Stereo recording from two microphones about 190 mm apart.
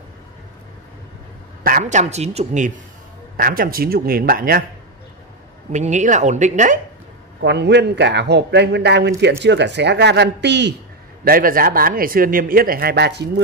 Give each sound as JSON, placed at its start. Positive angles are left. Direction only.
{"t": 1.6, "sound": "a woman's voice", "side_deg": -45}
{"t": 5.7, "sound": "a woman's voice", "side_deg": -40}
{"t": 7.4, "sound": "speech", "side_deg": -65}
{"t": 11.2, "sound": "speech", "side_deg": -50}